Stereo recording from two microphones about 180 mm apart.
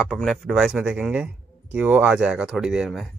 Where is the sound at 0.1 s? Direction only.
Centre (ahead or behind).